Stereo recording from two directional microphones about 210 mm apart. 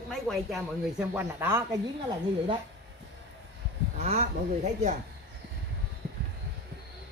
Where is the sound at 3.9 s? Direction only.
30° right (ahead or behind).